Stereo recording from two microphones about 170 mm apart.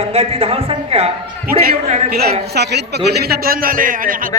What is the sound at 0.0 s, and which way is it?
Speech, 35° right (ahead or behind).